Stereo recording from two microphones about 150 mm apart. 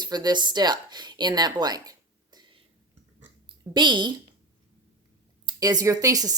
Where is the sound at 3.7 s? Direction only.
30° right (ahead or behind).